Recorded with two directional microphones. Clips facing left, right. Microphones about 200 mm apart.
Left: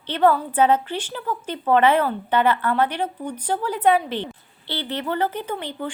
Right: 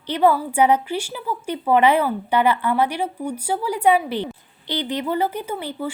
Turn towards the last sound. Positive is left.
turn(degrees=-10)  # may be behind; listen again after turning